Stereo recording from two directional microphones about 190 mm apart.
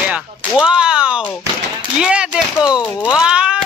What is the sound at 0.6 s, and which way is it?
Speech, 5° right (ahead or behind).